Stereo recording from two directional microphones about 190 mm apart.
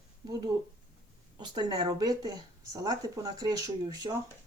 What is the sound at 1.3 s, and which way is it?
Speech, 20° right (ahead or behind).